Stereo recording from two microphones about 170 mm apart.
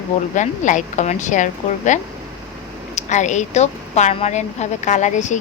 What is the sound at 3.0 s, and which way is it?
Speech, 45° left (ahead or behind).